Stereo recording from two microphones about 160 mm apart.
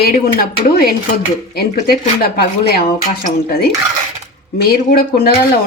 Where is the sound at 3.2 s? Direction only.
75° left (ahead or behind).